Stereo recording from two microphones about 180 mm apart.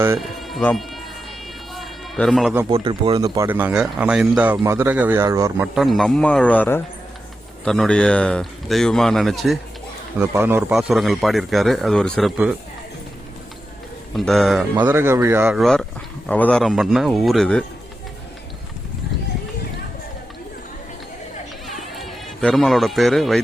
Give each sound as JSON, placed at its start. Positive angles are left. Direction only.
{"t": 0.2, "sound": "speech", "side_deg": 0}
{"t": 1.7, "sound": "a sound", "side_deg": 0}
{"t": 2.6, "sound": "speech", "side_deg": -30}
{"t": 3.2, "sound": "speech", "side_deg": -20}
{"t": 5.7, "sound": "speech", "side_deg": 0}
{"t": 10.2, "sound": "speech", "side_deg": -10}
{"t": 14.2, "sound": "speech", "side_deg": 0}
{"t": 15.5, "sound": "speech", "side_deg": 0}
{"t": 21.7, "sound": "a sound", "side_deg": 0}